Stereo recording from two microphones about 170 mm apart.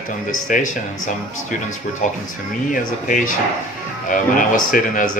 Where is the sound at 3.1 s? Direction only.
50° left (ahead or behind).